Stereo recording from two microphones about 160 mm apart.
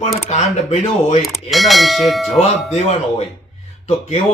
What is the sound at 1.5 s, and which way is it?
Bell, centre (ahead or behind).